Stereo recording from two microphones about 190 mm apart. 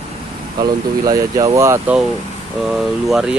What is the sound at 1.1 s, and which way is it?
Speech, 15° right (ahead or behind).